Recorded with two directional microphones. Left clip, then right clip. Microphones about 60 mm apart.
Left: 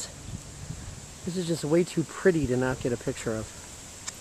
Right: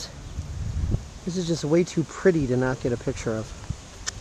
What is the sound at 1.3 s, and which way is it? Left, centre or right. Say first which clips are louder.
Speech: right 3 dB; right.